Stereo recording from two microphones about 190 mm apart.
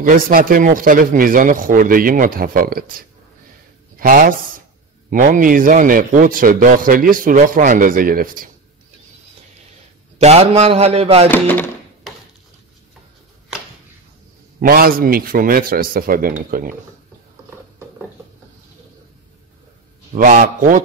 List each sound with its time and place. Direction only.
0.1 s a man's voice: 50° right (ahead or behind)
10.1 s a man's voice: 35° right (ahead or behind)
11.2 s a sound: 10° left (ahead or behind)
14.7 s a man's voice: 50° right (ahead or behind)
20.2 s a man's voice: 45° right (ahead or behind)